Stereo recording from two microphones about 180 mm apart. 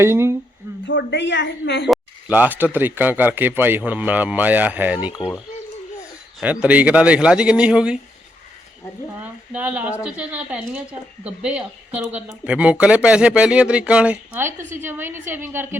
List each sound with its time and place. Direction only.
0.0 s speech: 15° right (ahead or behind)
0.9 s a woman's voice: 80° left
1.9 s speech: 10° right (ahead or behind)
6.4 s speech: 10° right (ahead or behind)
9.5 s speech: 10° right (ahead or behind)